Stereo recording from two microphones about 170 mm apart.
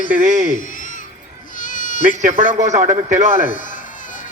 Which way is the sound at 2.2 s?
45° right (ahead or behind).